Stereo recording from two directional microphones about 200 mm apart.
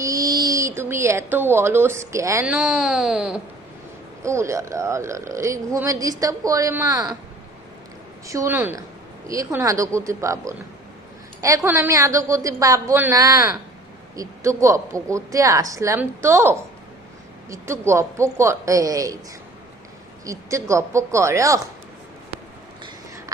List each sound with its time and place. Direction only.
0.0 s speech: 15° right (ahead or behind)
4.2 s speech: 15° right (ahead or behind)
8.3 s speech: 15° right (ahead or behind)
20.2 s speech: 15° right (ahead or behind)